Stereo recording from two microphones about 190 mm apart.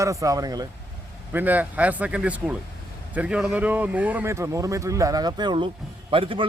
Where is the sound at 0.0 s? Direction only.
15° right (ahead or behind).